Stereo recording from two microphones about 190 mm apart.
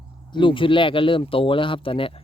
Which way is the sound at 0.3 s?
25° left (ahead or behind).